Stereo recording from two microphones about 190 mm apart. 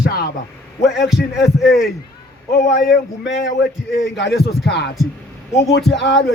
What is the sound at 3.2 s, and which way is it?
A man's voice, 65° left (ahead or behind).